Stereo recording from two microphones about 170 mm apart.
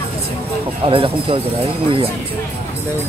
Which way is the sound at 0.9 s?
30° right (ahead or behind).